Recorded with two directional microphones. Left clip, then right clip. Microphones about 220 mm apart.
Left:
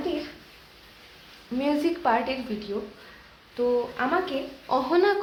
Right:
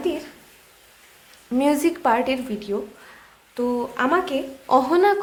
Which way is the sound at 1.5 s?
35° right (ahead or behind).